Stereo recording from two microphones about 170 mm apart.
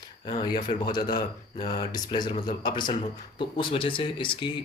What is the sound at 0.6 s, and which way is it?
Speech, 50° left (ahead or behind).